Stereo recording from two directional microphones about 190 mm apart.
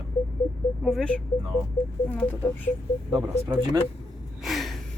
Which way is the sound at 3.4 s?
15° right (ahead or behind).